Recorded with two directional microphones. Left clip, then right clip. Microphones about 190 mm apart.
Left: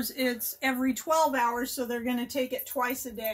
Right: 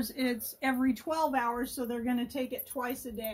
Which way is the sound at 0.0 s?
20° right (ahead or behind).